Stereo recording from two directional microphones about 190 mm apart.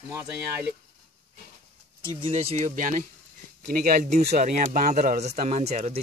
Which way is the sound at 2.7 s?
45° right (ahead or behind).